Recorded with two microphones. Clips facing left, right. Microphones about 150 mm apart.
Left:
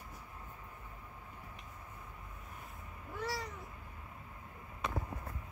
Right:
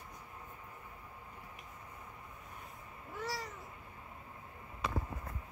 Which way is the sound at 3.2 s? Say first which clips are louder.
Left 1 dB; centre (ahead or behind).